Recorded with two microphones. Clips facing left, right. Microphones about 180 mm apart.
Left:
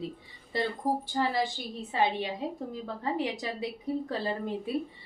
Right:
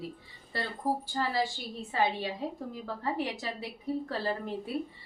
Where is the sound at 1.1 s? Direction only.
20° left (ahead or behind).